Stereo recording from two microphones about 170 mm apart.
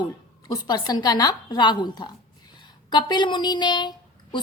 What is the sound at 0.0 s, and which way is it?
A woman's voice, 25° left (ahead or behind).